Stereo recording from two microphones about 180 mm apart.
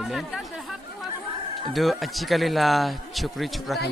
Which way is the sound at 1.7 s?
Centre (ahead or behind).